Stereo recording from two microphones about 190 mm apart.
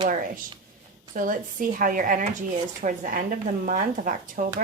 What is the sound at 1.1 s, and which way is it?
Speech, 45° right (ahead or behind).